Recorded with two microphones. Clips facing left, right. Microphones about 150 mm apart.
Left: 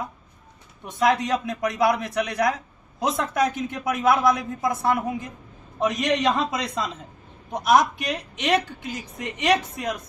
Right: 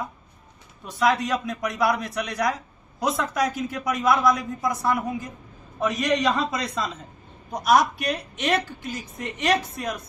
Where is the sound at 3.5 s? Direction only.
Centre (ahead or behind).